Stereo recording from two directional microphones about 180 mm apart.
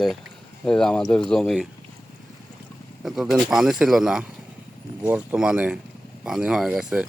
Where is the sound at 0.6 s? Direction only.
5° left (ahead or behind).